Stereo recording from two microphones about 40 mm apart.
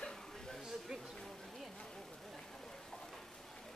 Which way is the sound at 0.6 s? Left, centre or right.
Centre.